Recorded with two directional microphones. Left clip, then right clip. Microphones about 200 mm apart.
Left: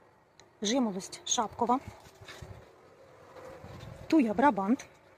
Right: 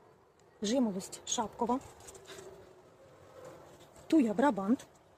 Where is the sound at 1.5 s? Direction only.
25° left (ahead or behind).